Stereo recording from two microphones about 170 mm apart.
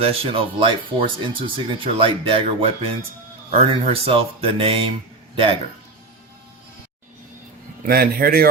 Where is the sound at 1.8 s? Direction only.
30° right (ahead or behind).